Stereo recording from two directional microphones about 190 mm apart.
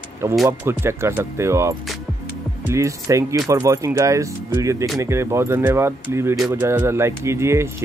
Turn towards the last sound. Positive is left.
turn(degrees=-15)  # may be behind; listen again after turning